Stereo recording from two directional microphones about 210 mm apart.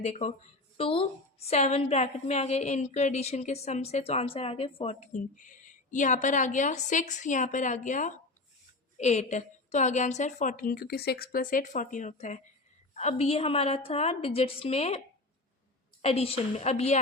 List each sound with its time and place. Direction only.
0.0 s a woman's voice: 35° left (ahead or behind)